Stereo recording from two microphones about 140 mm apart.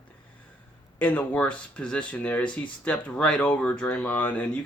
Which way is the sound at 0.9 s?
10° left (ahead or behind).